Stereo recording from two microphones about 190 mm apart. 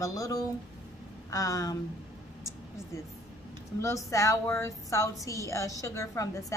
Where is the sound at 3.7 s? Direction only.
15° left (ahead or behind).